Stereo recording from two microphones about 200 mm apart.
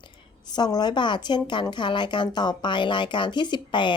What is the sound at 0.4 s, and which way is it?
A woman's voice, 20° left (ahead or behind).